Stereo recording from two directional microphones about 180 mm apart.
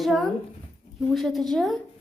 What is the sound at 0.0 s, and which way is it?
A woman's voice, centre (ahead or behind).